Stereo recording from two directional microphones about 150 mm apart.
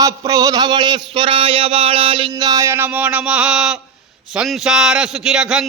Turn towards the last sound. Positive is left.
turn(degrees=-5)  # may be behind; listen again after turning